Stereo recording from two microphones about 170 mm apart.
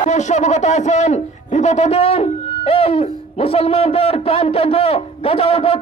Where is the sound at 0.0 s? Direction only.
45° left (ahead or behind).